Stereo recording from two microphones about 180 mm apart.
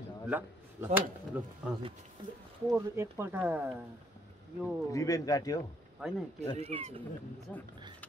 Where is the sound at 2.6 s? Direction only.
15° right (ahead or behind).